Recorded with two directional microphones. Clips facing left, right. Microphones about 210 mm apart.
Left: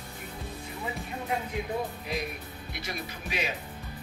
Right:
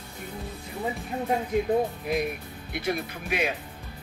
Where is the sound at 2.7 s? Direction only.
55° right (ahead or behind).